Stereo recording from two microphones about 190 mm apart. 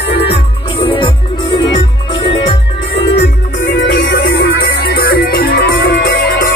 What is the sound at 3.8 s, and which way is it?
Music, 60° left (ahead or behind).